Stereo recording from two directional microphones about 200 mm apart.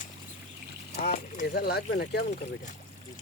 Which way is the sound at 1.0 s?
45° left (ahead or behind).